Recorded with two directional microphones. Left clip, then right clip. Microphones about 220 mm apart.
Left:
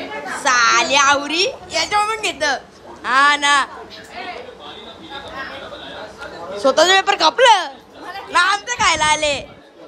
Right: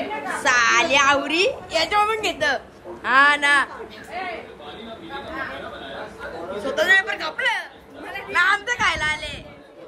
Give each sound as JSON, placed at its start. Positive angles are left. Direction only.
{"t": 0.4, "sound": "a woman's voice", "side_deg": 5}
{"t": 6.6, "sound": "speech", "side_deg": 15}
{"t": 8.3, "sound": "speech", "side_deg": 5}